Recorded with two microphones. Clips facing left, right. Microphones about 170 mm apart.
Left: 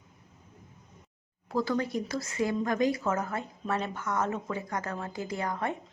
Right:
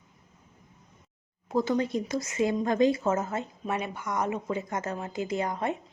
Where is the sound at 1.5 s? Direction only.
20° right (ahead or behind).